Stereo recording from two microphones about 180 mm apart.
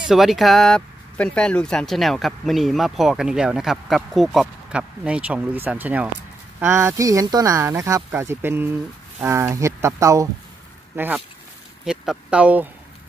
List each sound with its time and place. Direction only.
0.0 s speech: centre (ahead or behind)